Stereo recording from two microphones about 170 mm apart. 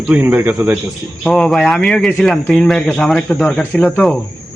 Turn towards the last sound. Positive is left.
turn(degrees=5)  # may be behind; listen again after turning